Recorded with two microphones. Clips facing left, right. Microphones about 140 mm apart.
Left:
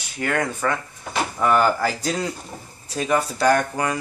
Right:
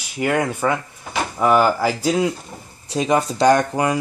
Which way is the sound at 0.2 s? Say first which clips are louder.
Right 4 dB; 15° right (ahead or behind).